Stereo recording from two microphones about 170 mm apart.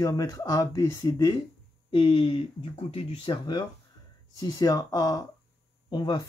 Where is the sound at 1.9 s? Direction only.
30° left (ahead or behind).